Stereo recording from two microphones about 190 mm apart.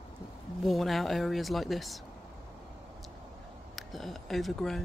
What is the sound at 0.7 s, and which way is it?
Speech, centre (ahead or behind).